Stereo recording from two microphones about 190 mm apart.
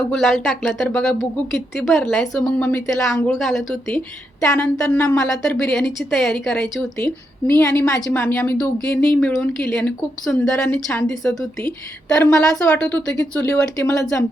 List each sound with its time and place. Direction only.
0.1 s a woman's voice: centre (ahead or behind)